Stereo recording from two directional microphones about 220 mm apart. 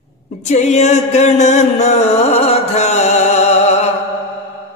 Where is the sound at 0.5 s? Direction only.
30° left (ahead or behind).